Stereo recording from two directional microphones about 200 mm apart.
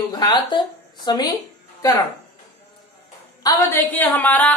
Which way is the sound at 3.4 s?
20° left (ahead or behind).